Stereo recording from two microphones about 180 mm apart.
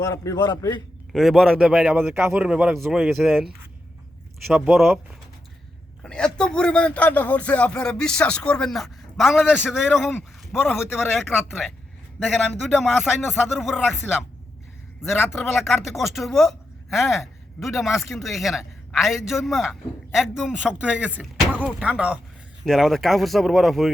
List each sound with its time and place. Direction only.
0.0 s a man's voice: 15° left (ahead or behind)
1.1 s speech: centre (ahead or behind)
6.0 s speech: 5° left (ahead or behind)
15.0 s speech: centre (ahead or behind)